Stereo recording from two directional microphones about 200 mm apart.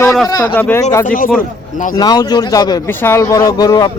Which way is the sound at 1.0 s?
45° left (ahead or behind).